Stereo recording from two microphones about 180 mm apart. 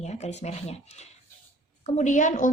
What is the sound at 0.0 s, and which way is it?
Cat, 40° left (ahead or behind).